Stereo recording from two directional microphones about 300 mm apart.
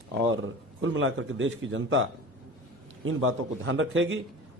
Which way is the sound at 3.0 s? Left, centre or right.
Right.